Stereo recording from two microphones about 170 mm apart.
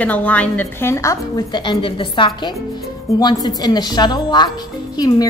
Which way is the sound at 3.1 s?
Centre (ahead or behind).